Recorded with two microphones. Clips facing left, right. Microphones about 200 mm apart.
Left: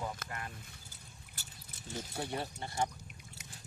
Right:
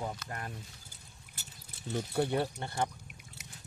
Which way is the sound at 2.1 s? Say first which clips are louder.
Right 9 dB; 60° right (ahead or behind).